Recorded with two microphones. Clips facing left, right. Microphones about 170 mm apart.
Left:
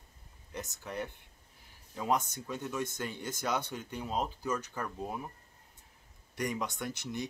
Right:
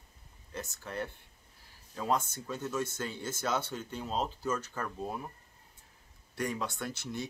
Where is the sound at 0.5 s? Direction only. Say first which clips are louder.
Even; 15° left (ahead or behind).